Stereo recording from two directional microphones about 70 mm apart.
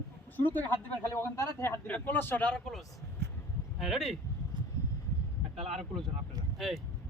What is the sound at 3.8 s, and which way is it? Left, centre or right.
Speech, centre.